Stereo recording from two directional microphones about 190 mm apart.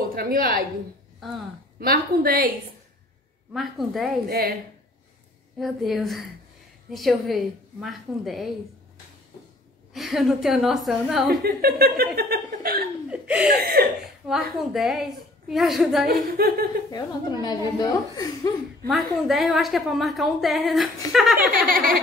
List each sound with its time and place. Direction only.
0.1 s a woman's voice: 50° right (ahead or behind)
1.8 s a woman's voice: 50° right (ahead or behind)
3.5 s a woman's voice: centre (ahead or behind)
4.3 s a woman's voice: 50° right (ahead or behind)
5.6 s a woman's voice: centre (ahead or behind)
9.9 s a woman's voice: centre (ahead or behind)
11.2 s a woman's voice: 55° right (ahead or behind)
13.1 s speech: 5° right (ahead or behind)
13.6 s a woman's voice: 55° right (ahead or behind)
14.2 s a woman's voice: centre (ahead or behind)
16.3 s a woman's voice: 50° right (ahead or behind)
16.9 s speech: 20° left (ahead or behind)
18.9 s a woman's voice: centre (ahead or behind)
21.6 s a woman's voice: 45° right (ahead or behind)